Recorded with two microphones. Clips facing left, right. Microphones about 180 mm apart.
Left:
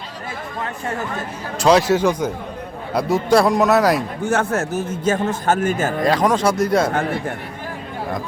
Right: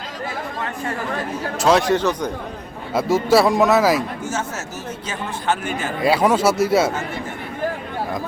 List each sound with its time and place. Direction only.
1.5 s a man's voice: centre (ahead or behind)
4.2 s a man's voice: 60° left (ahead or behind); by 5.9 s 45° left (ahead or behind)
6.0 s speech: 10° right (ahead or behind)
6.9 s speech: 60° left (ahead or behind)